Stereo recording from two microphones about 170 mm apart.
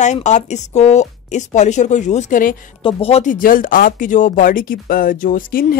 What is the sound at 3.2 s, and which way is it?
Speech, 55° left (ahead or behind).